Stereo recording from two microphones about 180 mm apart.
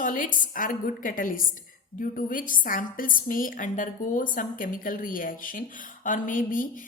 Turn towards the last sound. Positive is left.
turn(degrees=50)  # may be behind; listen again after turning